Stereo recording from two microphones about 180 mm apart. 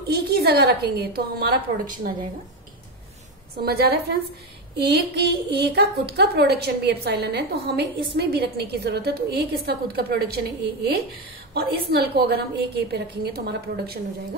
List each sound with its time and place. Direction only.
0.1 s a woman's voice: 60° right (ahead or behind)
3.6 s a woman's voice: 60° right (ahead or behind)